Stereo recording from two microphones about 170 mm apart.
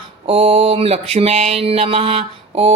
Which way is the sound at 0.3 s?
35° right (ahead or behind).